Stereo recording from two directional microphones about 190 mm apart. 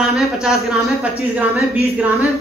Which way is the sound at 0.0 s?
Centre (ahead or behind).